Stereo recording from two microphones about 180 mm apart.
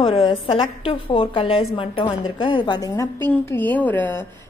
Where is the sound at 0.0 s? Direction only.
25° left (ahead or behind).